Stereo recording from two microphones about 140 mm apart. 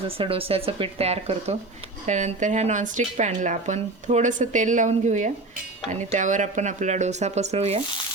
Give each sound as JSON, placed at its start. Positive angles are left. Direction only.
{"t": 0.2, "sound": "speech", "side_deg": -40}
{"t": 2.0, "sound": "speech", "side_deg": -55}